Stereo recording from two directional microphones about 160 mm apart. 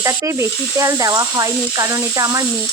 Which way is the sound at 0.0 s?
20° right (ahead or behind).